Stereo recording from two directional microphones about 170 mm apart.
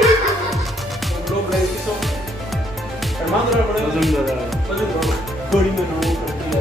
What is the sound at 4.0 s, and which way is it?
Speech, centre (ahead or behind).